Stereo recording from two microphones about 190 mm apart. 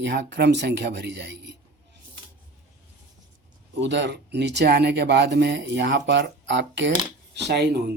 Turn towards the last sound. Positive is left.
turn(degrees=-60)  # may be behind; listen again after turning